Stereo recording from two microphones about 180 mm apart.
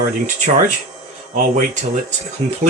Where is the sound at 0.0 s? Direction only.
45° right (ahead or behind).